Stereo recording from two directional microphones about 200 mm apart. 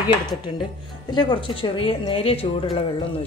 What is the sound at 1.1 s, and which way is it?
A woman's voice, 25° left (ahead or behind).